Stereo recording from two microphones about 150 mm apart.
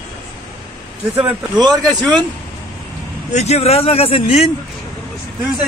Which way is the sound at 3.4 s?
45° left (ahead or behind).